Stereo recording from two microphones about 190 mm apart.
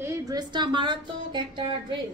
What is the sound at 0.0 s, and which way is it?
A woman's voice, 15° right (ahead or behind).